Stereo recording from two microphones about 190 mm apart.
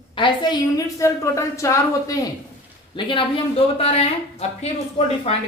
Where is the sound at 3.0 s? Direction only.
25° left (ahead or behind).